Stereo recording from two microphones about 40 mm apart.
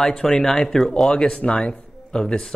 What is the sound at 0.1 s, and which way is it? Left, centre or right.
Speech, centre.